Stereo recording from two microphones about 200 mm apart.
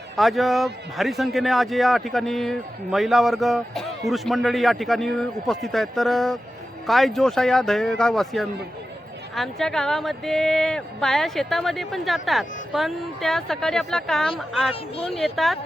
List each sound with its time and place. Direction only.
0.2 s speech: centre (ahead or behind)
14.7 s speech: 30° left (ahead or behind)
15.1 s speech: centre (ahead or behind)